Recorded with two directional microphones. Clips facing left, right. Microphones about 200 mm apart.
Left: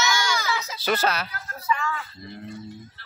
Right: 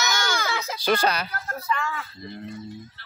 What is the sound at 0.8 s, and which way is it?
Speech, 5° left (ahead or behind).